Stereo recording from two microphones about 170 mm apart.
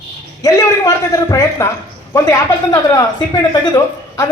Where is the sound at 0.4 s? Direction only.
20° left (ahead or behind).